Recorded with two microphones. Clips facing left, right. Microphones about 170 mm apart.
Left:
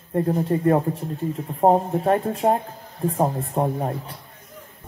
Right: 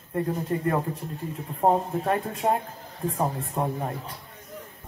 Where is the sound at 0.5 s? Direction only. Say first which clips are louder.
Left 7 dB; 30° left (ahead or behind).